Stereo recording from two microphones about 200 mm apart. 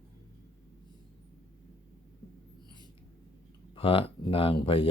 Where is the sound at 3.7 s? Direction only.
25° left (ahead or behind).